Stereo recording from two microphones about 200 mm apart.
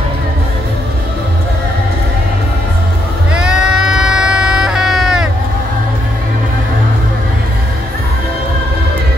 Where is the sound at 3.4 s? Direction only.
5° right (ahead or behind).